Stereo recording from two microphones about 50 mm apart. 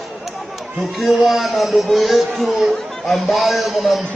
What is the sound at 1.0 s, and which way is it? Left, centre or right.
Speech, centre.